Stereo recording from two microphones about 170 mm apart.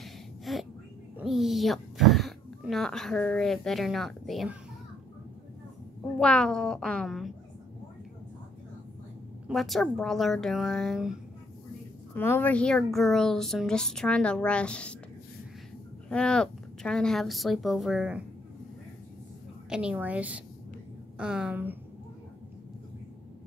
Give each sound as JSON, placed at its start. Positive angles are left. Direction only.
{"t": 0.0, "sound": "a sound", "side_deg": 0}
{"t": 1.1, "sound": "speech", "side_deg": 0}
{"t": 6.1, "sound": "speech", "side_deg": 5}
{"t": 9.5, "sound": "speech", "side_deg": 0}
{"t": 12.2, "sound": "speech", "side_deg": 10}
{"t": 16.1, "sound": "speech", "side_deg": 5}
{"t": 19.7, "sound": "a woman's voice", "side_deg": -5}